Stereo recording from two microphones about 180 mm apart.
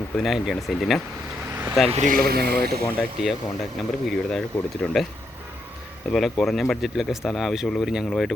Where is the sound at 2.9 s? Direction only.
Centre (ahead or behind).